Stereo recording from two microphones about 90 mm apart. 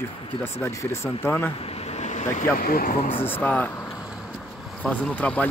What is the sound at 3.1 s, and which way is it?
Speech, 20° left (ahead or behind).